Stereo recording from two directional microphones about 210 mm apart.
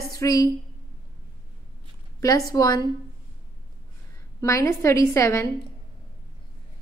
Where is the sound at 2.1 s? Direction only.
15° left (ahead or behind).